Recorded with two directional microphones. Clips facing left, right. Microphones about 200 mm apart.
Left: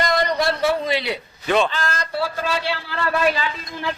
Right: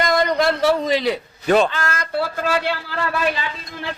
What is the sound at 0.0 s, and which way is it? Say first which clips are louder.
A man's voice: right 2 dB; 50° right (ahead or behind).